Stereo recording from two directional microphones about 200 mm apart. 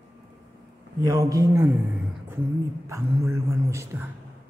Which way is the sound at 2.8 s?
15° right (ahead or behind).